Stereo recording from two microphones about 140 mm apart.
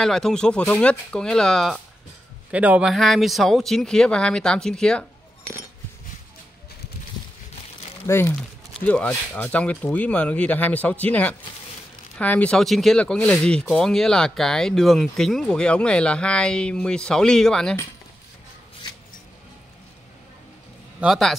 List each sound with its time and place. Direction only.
0.0 s speech: 5° left (ahead or behind)
2.5 s speech: 10° right (ahead or behind)
8.1 s speech: 20° left (ahead or behind)
8.4 s speech: 5° left (ahead or behind)
21.0 s speech: centre (ahead or behind)